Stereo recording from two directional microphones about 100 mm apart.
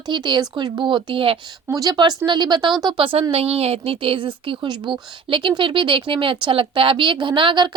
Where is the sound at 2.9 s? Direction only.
65° right (ahead or behind).